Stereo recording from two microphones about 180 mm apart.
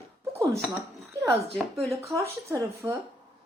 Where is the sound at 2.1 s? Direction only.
15° right (ahead or behind).